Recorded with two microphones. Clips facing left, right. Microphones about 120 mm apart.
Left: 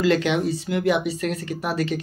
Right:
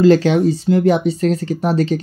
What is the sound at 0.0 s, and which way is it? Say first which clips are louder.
Speech: right 8 dB; 30° right (ahead or behind).